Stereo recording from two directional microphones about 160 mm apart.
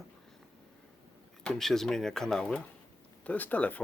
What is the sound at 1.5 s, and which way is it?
Speech, centre (ahead or behind).